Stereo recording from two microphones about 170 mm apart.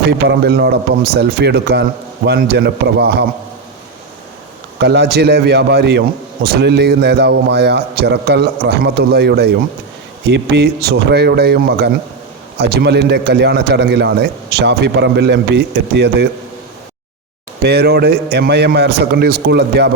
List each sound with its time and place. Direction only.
0.3 s a man's voice: 75° right (ahead or behind)
4.8 s a man's voice: 75° right (ahead or behind)
10.2 s a man's voice: 90° right
17.6 s a man's voice: 75° right (ahead or behind)